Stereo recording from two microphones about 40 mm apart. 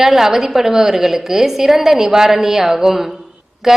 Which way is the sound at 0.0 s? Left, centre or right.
Centre.